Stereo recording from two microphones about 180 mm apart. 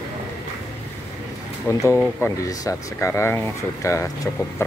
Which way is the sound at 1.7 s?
15° left (ahead or behind).